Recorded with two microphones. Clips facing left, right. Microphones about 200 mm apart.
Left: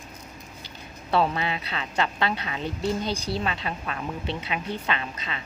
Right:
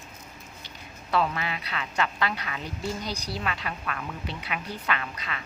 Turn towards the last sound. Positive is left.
turn(degrees=25)  # may be behind; listen again after turning